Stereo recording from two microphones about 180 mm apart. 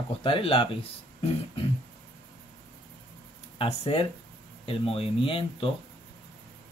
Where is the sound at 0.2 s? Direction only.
30° left (ahead or behind).